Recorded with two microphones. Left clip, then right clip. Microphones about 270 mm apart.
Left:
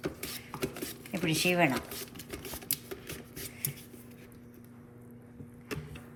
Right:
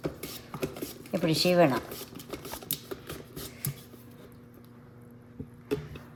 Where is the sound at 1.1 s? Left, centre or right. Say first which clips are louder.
Right 4 dB; centre.